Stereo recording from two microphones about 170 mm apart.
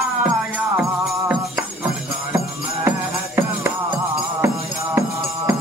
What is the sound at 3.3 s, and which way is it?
Music, 15° right (ahead or behind).